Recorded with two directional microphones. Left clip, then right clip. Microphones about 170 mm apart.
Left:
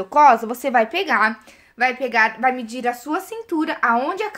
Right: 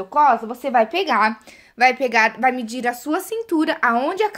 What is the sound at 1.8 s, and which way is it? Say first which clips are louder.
A woman's voice: right 2 dB; 50° right (ahead or behind).